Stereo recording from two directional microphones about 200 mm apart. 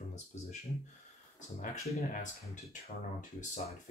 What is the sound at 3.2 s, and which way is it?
Speech, 40° left (ahead or behind).